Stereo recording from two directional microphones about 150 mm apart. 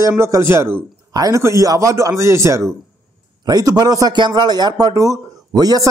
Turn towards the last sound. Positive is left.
turn(degrees=-25)  # may be behind; listen again after turning